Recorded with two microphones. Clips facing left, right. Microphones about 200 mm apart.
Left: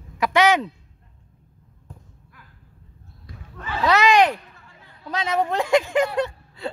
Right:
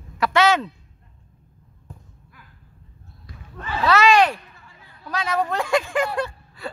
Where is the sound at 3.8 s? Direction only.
20° left (ahead or behind).